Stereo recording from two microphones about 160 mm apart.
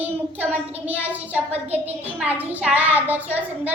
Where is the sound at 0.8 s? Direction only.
10° right (ahead or behind).